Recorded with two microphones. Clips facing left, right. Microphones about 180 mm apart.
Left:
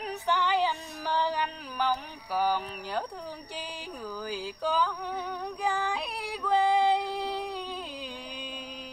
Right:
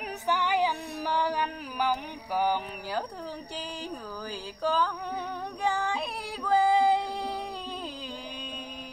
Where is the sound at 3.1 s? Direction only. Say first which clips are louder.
Right 2 dB; centre (ahead or behind).